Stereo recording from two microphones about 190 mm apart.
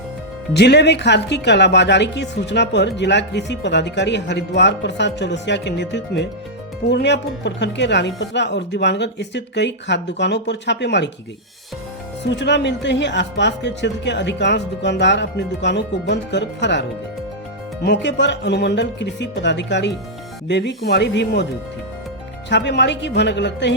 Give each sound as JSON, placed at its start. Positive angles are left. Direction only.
{"t": 0.5, "sound": "a woman's voice", "side_deg": 60}
{"t": 12.2, "sound": "speech", "side_deg": 70}
{"t": 17.8, "sound": "a woman's voice", "side_deg": 70}
{"t": 22.4, "sound": "speech", "side_deg": 65}